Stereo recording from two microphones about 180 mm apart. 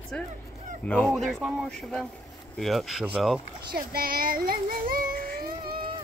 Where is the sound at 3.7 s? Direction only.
55° right (ahead or behind).